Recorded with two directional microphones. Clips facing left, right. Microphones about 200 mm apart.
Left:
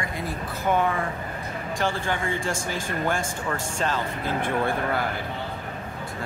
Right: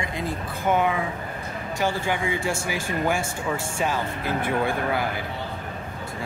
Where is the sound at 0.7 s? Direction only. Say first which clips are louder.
Right 1 dB; 10° right (ahead or behind).